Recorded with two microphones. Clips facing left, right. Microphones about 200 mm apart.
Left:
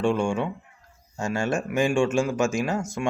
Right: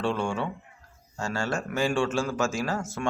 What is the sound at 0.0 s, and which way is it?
A man's voice, 15° left (ahead or behind).